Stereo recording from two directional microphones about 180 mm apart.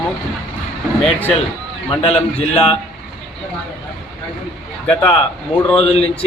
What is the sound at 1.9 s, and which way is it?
Speech, 30° left (ahead or behind).